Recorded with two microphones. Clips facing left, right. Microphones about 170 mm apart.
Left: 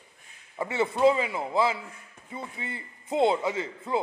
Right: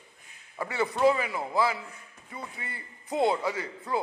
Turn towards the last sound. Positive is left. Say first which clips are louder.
# left 2 dB
turn(degrees=20)  # may be behind; listen again after turning